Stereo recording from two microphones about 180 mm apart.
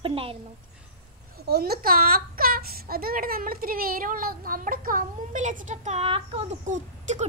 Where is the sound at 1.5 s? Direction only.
60° right (ahead or behind).